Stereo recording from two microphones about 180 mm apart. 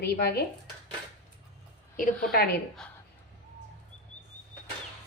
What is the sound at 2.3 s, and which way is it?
Speech, 55° left (ahead or behind).